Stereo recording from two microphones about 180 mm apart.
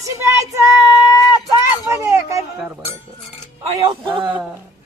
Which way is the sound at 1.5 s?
15° right (ahead or behind).